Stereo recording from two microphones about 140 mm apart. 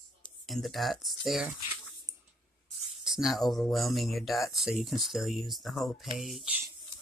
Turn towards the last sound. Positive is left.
turn(degrees=0)  # may be behind; listen again after turning